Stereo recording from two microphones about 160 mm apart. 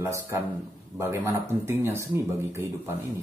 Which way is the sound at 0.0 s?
20° right (ahead or behind).